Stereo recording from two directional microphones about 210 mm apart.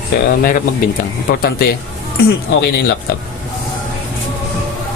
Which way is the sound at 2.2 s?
50° left (ahead or behind).